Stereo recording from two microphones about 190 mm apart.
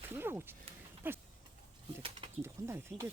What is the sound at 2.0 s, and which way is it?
Pulleys, 30° right (ahead or behind).